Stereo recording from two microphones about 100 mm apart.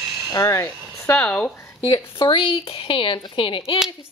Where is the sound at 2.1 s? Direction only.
60° left (ahead or behind).